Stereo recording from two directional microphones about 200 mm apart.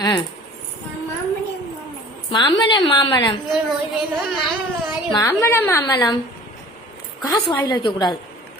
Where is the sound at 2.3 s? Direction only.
20° left (ahead or behind).